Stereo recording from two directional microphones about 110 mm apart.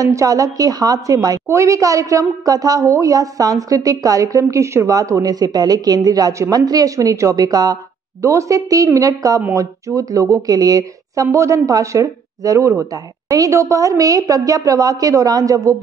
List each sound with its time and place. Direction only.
0.0 s a woman's voice: 30° right (ahead or behind)